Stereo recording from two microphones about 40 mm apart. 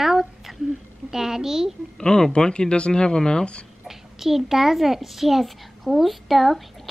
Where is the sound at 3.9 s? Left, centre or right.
Centre.